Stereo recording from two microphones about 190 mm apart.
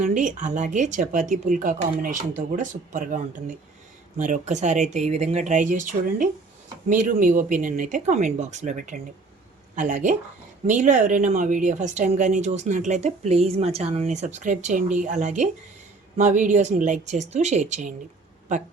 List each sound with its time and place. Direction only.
0.0 s speech: 40° right (ahead or behind)